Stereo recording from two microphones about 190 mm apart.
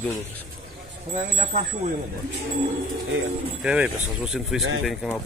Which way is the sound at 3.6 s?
5° right (ahead or behind).